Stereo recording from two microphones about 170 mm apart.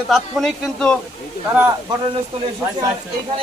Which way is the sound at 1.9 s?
25° right (ahead or behind).